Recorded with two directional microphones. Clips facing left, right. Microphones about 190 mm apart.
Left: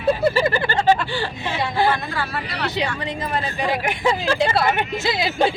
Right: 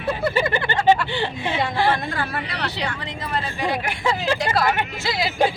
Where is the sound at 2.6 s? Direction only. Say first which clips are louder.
Left 4 dB; 15° left (ahead or behind).